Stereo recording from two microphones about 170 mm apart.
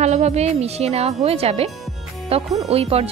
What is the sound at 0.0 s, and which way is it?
Speech, 40° right (ahead or behind).